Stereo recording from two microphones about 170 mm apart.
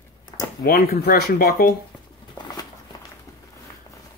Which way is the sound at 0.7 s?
60° left (ahead or behind).